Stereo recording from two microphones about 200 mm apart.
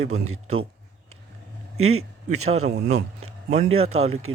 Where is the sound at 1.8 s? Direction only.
90° right.